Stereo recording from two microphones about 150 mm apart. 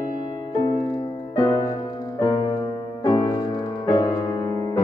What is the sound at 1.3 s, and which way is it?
Music, 25° left (ahead or behind).